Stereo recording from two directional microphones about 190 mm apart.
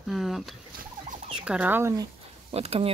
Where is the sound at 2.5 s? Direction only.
30° right (ahead or behind).